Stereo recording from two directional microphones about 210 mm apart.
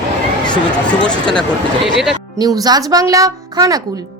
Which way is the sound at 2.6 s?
20° right (ahead or behind).